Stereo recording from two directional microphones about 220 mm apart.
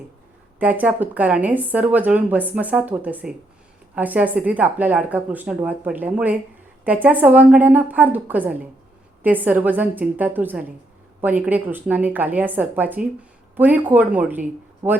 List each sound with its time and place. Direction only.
0.6 s a woman's voice: 5° right (ahead or behind)